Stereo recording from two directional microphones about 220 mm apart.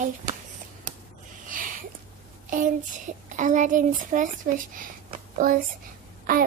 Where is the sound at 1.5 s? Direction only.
35° right (ahead or behind).